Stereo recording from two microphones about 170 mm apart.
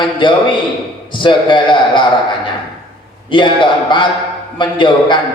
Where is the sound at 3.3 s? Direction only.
30° left (ahead or behind).